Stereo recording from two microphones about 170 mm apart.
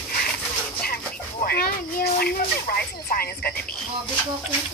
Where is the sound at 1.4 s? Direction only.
65° left (ahead or behind).